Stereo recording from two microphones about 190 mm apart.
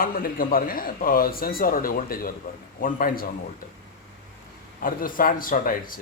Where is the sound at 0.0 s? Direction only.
50° left (ahead or behind).